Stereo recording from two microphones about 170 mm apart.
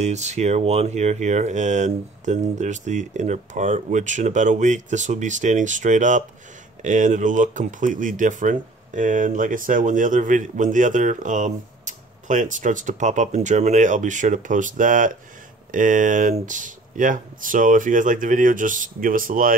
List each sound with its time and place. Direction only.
0.0 s speech: 40° right (ahead or behind)